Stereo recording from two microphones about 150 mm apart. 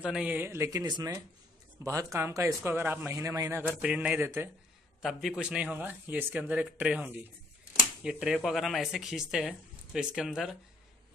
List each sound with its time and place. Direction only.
0.0 s a man's voice: 5° right (ahead or behind)
3.8 s a man's voice: 10° right (ahead or behind)